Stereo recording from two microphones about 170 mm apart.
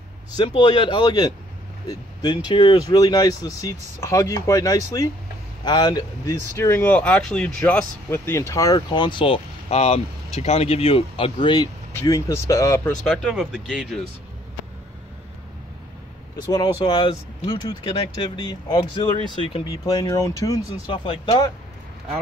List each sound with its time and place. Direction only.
0.4 s a man's voice: 30° left (ahead or behind)
13.0 s speech: centre (ahead or behind)
16.8 s a man's voice: 30° left (ahead or behind)
19.8 s speech: 20° left (ahead or behind)